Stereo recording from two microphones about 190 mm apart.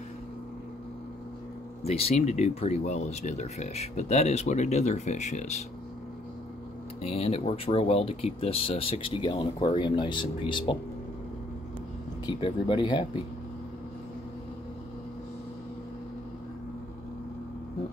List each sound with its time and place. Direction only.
1.8 s speech: 30° left (ahead or behind)
7.0 s speech: 30° left (ahead or behind)
12.3 s speech: 25° left (ahead or behind)